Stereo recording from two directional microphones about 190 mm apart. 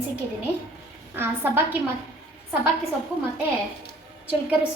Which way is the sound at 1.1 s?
10° right (ahead or behind).